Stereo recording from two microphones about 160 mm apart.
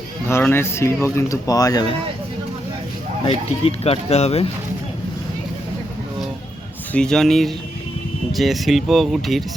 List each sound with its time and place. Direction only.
0.3 s speech: 15° left (ahead or behind)
3.2 s speech: 40° left (ahead or behind)
6.9 s speech: 5° left (ahead or behind)